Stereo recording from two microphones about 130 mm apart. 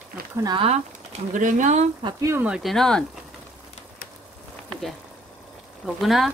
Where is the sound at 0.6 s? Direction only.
55° right (ahead or behind).